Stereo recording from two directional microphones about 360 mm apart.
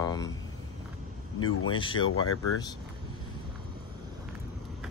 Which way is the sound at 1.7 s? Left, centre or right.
Centre.